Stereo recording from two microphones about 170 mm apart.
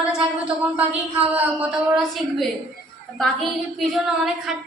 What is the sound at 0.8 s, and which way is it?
A woman's voice, 10° right (ahead or behind).